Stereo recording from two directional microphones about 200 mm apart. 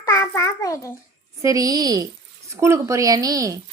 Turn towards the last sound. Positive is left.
turn(degrees=-15)  # may be behind; listen again after turning